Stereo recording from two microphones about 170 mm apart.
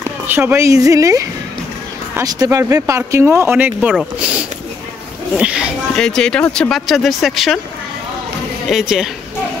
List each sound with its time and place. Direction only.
0.3 s a woman's voice: 15° right (ahead or behind)
8.6 s speech: 5° right (ahead or behind)